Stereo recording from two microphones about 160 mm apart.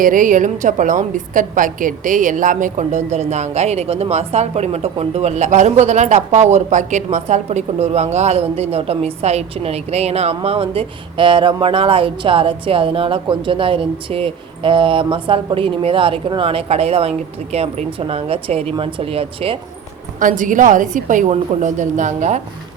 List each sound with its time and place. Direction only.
0.0 s a woman's voice: 55° right (ahead or behind); by 19.5 s 35° right (ahead or behind)
20.1 s a woman's voice: 55° right (ahead or behind)